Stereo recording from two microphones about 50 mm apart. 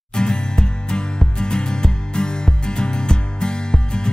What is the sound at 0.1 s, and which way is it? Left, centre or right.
Music, centre.